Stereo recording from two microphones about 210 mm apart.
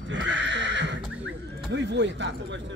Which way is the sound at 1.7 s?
55° right (ahead or behind).